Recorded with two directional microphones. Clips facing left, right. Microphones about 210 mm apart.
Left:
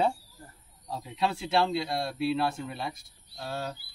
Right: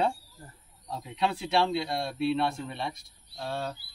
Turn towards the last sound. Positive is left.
turn(degrees=5)  # may be behind; listen again after turning